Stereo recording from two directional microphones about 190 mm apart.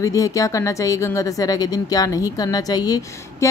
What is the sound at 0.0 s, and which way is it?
Speech, 15° left (ahead or behind).